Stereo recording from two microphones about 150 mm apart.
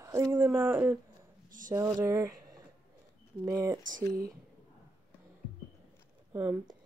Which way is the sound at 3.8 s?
65° right (ahead or behind).